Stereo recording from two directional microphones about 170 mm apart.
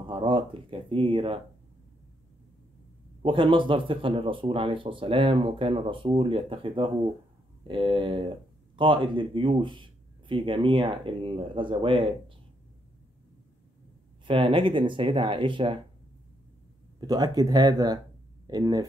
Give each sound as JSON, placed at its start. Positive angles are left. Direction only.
{"t": 0.1, "sound": "speech", "side_deg": -30}
{"t": 3.2, "sound": "speech", "side_deg": -30}
{"t": 14.2, "sound": "speech", "side_deg": -30}
{"t": 17.0, "sound": "speech", "side_deg": -25}